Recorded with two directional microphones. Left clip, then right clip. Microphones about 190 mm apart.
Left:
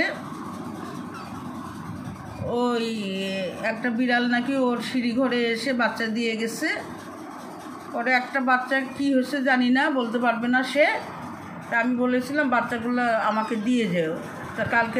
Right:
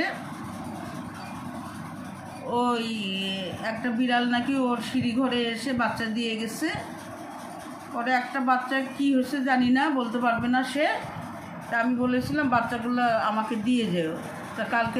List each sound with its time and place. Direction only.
2.5 s a man's voice: 20° left (ahead or behind)
8.0 s a man's voice: 25° left (ahead or behind)